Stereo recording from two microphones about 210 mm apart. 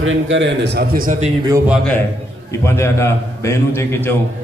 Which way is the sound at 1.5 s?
15° right (ahead or behind).